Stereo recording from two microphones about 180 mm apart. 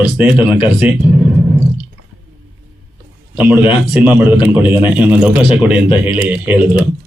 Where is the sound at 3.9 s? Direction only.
10° right (ahead or behind).